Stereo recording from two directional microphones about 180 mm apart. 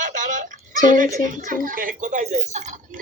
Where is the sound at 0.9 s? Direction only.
45° right (ahead or behind).